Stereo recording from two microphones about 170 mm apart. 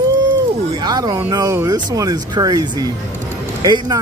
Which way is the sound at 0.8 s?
25° right (ahead or behind).